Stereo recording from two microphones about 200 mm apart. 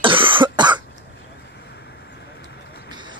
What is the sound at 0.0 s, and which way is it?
Cough, 25° right (ahead or behind).